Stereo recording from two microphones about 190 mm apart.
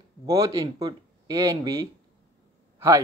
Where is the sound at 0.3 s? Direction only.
20° right (ahead or behind).